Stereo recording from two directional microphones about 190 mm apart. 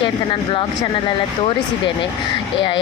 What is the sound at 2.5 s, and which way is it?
Speech, 25° left (ahead or behind).